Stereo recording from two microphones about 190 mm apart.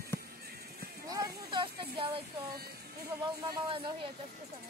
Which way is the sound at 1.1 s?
25° right (ahead or behind).